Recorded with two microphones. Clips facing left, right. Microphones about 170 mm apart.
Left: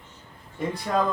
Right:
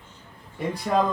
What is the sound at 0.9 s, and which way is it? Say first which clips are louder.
Speech: right 3 dB; 10° right (ahead or behind).